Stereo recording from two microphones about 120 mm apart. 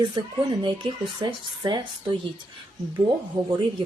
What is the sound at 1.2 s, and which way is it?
Speech, 40° right (ahead or behind).